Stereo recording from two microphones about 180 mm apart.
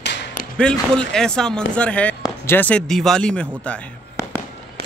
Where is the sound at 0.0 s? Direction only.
75° left (ahead or behind).